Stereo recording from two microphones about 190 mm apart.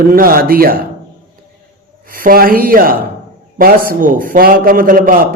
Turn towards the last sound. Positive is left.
turn(degrees=-45)  # may be behind; listen again after turning